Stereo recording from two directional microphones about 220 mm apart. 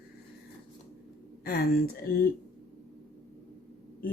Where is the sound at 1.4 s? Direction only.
40° left (ahead or behind).